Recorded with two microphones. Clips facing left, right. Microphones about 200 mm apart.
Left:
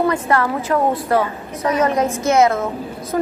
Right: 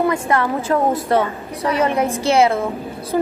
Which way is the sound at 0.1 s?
25° right (ahead or behind).